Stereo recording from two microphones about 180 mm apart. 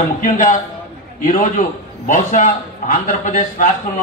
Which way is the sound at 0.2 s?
45° left (ahead or behind).